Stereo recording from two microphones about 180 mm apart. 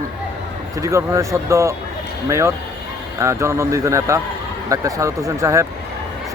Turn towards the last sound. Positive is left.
turn(degrees=-15)  # may be behind; listen again after turning